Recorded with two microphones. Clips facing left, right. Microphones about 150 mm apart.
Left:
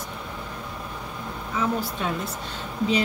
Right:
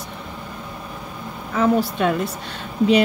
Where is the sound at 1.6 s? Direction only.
70° right (ahead or behind).